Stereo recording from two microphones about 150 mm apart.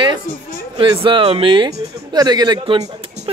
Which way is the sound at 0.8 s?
35° right (ahead or behind).